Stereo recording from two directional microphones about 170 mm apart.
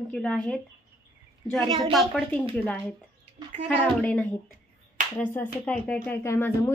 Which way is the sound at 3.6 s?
10° left (ahead or behind).